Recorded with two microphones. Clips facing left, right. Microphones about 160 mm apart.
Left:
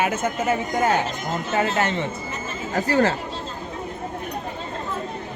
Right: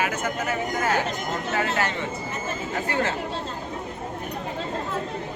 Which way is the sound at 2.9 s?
35° left (ahead or behind).